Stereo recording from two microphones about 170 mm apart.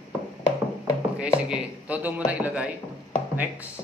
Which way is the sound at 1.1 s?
5° right (ahead or behind).